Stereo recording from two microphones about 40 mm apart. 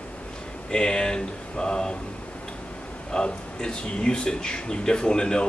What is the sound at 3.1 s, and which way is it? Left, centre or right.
Speech, left.